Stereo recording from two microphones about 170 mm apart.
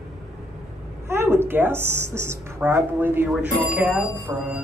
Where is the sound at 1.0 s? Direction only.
15° right (ahead or behind).